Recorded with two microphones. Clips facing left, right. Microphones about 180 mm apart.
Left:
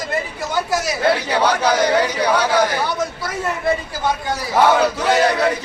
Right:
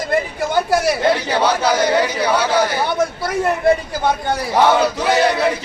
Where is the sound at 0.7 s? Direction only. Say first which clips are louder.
Right 6 dB; 55° right (ahead or behind).